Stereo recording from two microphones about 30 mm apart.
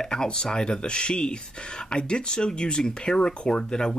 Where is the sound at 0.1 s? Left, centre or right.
Left.